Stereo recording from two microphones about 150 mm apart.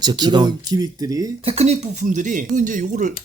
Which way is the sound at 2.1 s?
55° right (ahead or behind).